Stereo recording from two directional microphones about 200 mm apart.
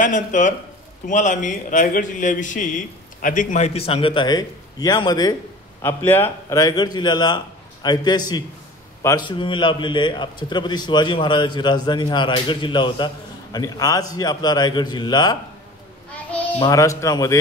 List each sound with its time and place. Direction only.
0.0 s a man's voice: 40° left (ahead or behind); by 15.3 s 20° left (ahead or behind)
16.1 s a sound: 5° left (ahead or behind)
16.5 s speech: 15° left (ahead or behind)